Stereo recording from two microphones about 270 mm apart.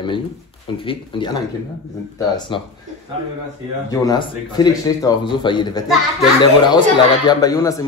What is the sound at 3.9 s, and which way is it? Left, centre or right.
Speech, centre.